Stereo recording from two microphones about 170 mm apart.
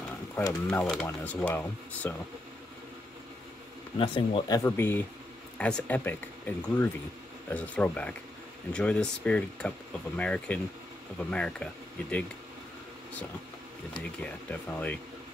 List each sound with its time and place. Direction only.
0.5 s speech: 5° left (ahead or behind)
4.0 s speech: 30° left (ahead or behind)
4.6 s speech: 15° left (ahead or behind)
14.5 s speech: 10° left (ahead or behind)